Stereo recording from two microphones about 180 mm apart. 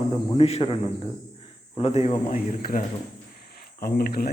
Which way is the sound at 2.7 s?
50° left (ahead or behind).